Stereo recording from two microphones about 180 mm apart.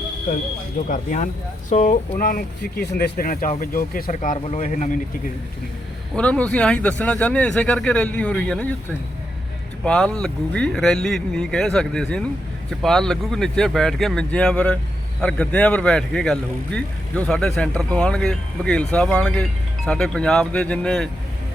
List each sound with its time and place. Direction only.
0.9 s speech: 45° left (ahead or behind)
6.1 s speech: 5° left (ahead or behind)
9.8 s speech: 5° left (ahead or behind)